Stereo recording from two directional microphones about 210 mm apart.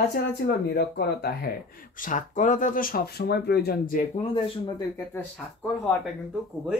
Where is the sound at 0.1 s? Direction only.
50° left (ahead or behind).